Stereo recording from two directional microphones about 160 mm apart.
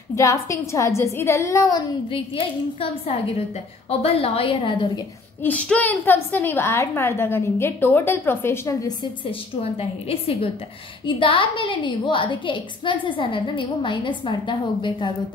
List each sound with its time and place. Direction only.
0.1 s a woman's voice: 20° left (ahead or behind)
2.0 s a woman's voice: 35° left (ahead or behind)
5.4 s a woman's voice: 10° left (ahead or behind)
9.2 s a woman's voice: 35° left (ahead or behind)